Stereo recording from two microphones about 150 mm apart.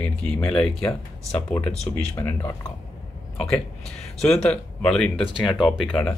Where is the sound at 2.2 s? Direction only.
20° left (ahead or behind).